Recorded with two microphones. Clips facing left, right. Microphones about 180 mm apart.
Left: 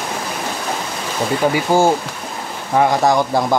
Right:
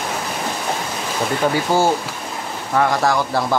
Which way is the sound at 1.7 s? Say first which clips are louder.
Left 3 dB; 15° left (ahead or behind).